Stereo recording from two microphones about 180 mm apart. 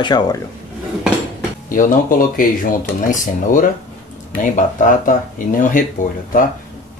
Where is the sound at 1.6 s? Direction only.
50° left (ahead or behind).